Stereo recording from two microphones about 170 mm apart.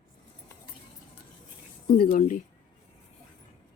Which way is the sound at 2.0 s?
55° left (ahead or behind).